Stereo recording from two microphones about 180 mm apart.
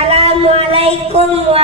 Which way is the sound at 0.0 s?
35° right (ahead or behind).